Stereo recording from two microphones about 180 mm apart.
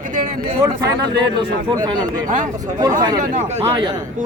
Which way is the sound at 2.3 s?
45° right (ahead or behind).